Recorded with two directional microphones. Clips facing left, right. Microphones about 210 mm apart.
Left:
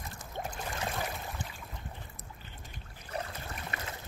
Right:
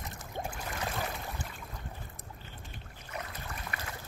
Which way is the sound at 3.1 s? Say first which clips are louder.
Left 3 dB; 30° left (ahead or behind).